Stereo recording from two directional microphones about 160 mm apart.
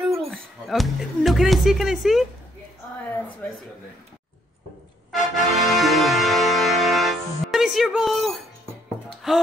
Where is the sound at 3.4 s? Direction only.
10° left (ahead or behind).